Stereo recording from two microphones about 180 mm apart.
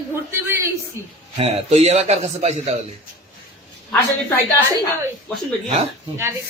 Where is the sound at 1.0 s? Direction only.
15° right (ahead or behind).